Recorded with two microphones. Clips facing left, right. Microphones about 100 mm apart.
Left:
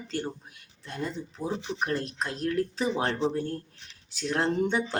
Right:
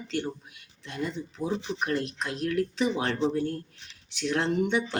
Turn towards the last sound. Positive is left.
turn(degrees=35)  # may be behind; listen again after turning